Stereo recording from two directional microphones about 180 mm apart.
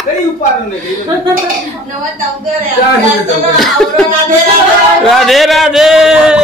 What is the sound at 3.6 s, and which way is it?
Speech, centre (ahead or behind).